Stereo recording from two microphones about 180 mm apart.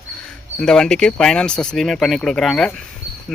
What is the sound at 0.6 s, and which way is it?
Speech, 5° left (ahead or behind).